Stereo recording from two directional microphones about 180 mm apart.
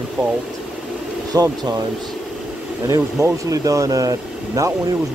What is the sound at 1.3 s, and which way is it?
Speech, 20° right (ahead or behind).